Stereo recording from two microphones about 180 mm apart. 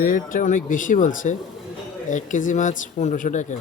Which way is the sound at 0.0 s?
50° left (ahead or behind).